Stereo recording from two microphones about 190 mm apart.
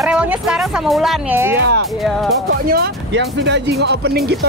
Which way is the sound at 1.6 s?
65° right (ahead or behind).